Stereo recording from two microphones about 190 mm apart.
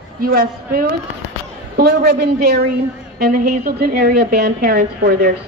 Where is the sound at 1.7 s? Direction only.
60° right (ahead or behind).